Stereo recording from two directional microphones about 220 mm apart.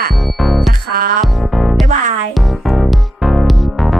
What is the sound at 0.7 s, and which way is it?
Music, 40° right (ahead or behind).